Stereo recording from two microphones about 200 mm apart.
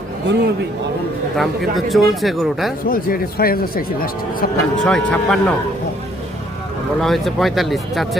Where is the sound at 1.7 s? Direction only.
Centre (ahead or behind).